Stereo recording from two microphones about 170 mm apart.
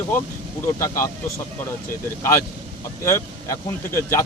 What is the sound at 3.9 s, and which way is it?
Speech, 15° left (ahead or behind).